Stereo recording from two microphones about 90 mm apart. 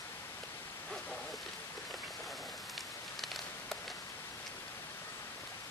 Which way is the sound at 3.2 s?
Centre (ahead or behind).